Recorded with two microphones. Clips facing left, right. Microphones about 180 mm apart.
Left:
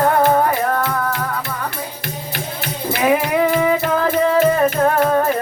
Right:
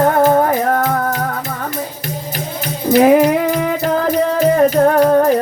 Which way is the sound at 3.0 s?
40° right (ahead or behind).